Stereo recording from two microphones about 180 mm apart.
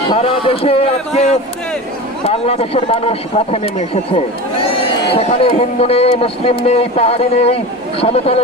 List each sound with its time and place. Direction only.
0.1 s a man's voice: 30° left (ahead or behind)